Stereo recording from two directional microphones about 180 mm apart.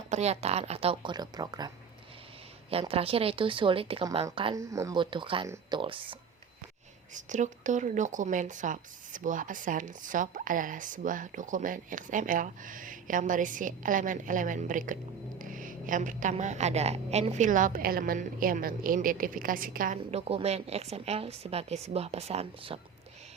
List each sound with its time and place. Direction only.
0.1 s a woman's voice: 35° right (ahead or behind); by 1.7 s 20° right (ahead or behind)
2.6 s a woman's voice: 30° right (ahead or behind)
7.1 s speech: 45° right (ahead or behind)
20.1 s a woman's voice: 35° right (ahead or behind)